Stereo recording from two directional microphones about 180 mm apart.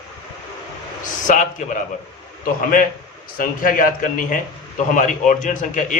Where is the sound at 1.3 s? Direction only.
45° left (ahead or behind).